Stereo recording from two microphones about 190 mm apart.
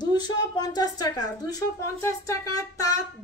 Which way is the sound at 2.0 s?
15° left (ahead or behind).